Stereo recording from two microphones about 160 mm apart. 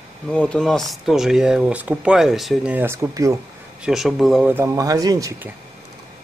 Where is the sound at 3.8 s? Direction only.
Centre (ahead or behind).